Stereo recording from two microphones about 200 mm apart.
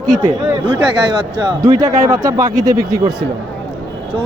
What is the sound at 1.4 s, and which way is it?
Speech, 20° right (ahead or behind).